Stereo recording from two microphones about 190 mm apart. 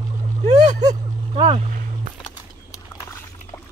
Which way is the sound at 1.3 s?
30° right (ahead or behind).